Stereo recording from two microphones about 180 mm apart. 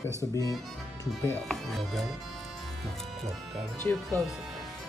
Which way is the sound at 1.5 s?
Centre (ahead or behind).